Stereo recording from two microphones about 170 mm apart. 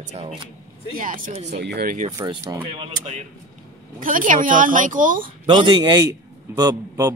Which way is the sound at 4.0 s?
55° right (ahead or behind).